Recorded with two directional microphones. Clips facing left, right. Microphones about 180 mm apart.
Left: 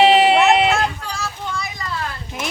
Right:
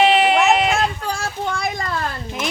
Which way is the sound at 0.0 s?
30° left (ahead or behind).